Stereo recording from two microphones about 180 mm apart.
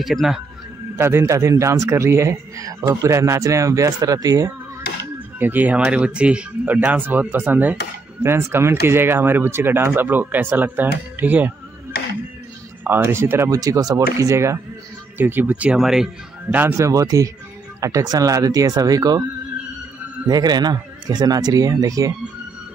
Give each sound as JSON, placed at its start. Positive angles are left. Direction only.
{"t": 0.0, "sound": "speech", "side_deg": 0}
{"t": 0.9, "sound": "a man's voice", "side_deg": -15}
{"t": 12.8, "sound": "a man's voice", "side_deg": -10}
{"t": 16.4, "sound": "a man's voice", "side_deg": -15}
{"t": 20.2, "sound": "speech", "side_deg": -20}